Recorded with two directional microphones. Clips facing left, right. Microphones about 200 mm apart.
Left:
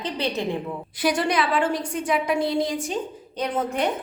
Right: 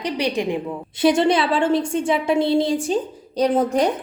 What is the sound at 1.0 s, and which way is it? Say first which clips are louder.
A woman's voice: right 6 dB; 25° right (ahead or behind).